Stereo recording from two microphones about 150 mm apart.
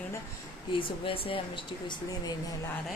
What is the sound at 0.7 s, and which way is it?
Speech, 35° left (ahead or behind).